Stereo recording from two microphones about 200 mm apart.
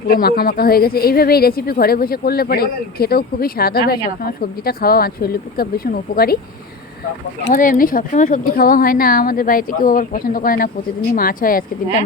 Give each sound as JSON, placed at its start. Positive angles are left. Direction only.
{"t": 0.1, "sound": "a woman's voice", "side_deg": 50}
{"t": 7.5, "sound": "a woman's voice", "side_deg": 45}